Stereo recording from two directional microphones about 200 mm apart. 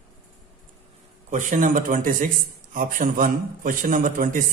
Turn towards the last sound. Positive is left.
turn(degrees=-40)  # may be behind; listen again after turning